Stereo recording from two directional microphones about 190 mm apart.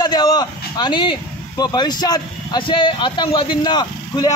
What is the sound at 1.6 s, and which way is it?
Speech, 20° left (ahead or behind).